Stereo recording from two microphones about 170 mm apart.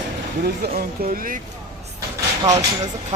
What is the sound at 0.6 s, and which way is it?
Speech, 60° right (ahead or behind).